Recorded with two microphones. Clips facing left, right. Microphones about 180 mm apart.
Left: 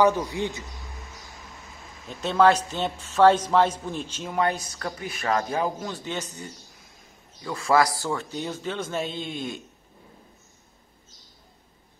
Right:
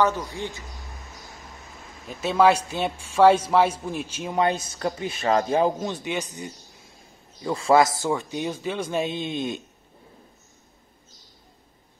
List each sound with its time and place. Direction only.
0.0 s a man's voice: 15° left (ahead or behind)
2.0 s a man's voice: 10° right (ahead or behind)
4.3 s speech: 20° right (ahead or behind)
7.4 s speech: 25° right (ahead or behind)